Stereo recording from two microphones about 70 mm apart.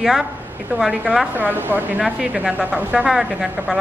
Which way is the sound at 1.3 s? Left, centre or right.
Right.